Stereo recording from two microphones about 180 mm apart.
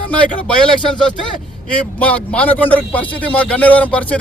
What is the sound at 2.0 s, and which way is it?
A man's voice, 5° left (ahead or behind).